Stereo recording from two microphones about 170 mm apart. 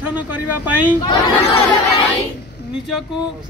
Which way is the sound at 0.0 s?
10° right (ahead or behind).